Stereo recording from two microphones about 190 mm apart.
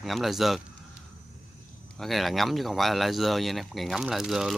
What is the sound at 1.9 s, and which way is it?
Speech, centre (ahead or behind).